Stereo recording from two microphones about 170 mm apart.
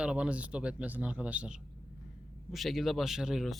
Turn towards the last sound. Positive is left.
turn(degrees=0)  # may be behind; listen again after turning